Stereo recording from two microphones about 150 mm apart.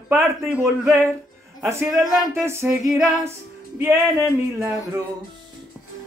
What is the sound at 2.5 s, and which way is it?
Speech, 15° right (ahead or behind).